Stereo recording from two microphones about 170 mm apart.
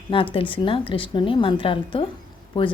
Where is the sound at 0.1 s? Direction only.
30° left (ahead or behind).